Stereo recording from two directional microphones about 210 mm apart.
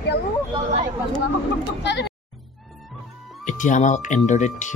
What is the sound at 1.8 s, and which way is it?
Speech, 55° left (ahead or behind).